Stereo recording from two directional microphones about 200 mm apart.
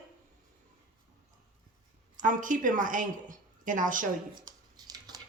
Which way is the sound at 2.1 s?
40° right (ahead or behind).